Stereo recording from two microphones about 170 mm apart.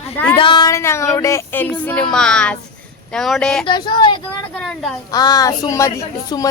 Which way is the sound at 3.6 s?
25° left (ahead or behind).